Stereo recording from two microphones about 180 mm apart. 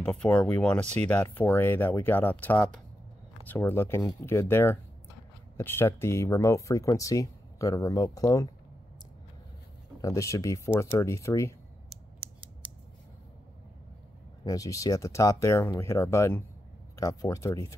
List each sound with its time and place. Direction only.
0.0 s speech: 5° left (ahead or behind)
10.0 s speech: 20° left (ahead or behind)
11.9 s creak: 5° right (ahead or behind)
14.4 s speech: 20° left (ahead or behind)